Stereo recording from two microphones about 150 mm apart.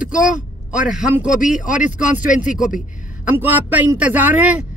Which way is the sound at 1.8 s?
55° left (ahead or behind).